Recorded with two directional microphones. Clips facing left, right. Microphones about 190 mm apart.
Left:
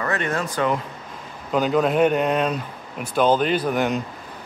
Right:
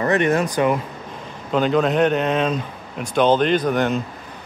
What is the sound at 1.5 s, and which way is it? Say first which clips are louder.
Speech: right 1 dB; 5° left (ahead or behind).